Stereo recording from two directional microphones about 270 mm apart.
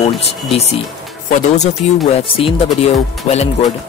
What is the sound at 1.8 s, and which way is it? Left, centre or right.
Speech, left.